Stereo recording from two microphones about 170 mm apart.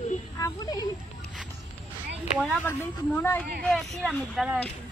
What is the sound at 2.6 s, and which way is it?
Speech, 15° left (ahead or behind).